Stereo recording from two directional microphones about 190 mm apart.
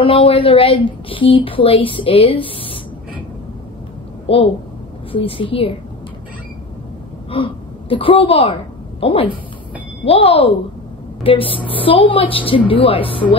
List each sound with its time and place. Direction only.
0.0 s speech: 30° left (ahead or behind)
4.3 s speech: 30° left (ahead or behind)
7.2 s speech: 25° left (ahead or behind)